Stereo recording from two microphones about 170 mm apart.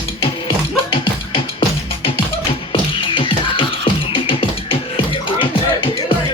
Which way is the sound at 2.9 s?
30° left (ahead or behind).